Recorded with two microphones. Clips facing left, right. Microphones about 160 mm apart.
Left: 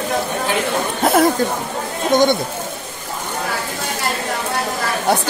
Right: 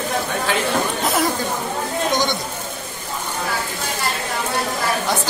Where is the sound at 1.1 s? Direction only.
55° left (ahead or behind).